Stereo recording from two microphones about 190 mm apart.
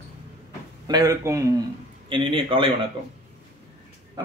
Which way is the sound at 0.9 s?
20° right (ahead or behind).